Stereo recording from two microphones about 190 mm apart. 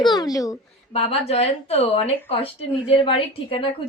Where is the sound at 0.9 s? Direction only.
35° left (ahead or behind).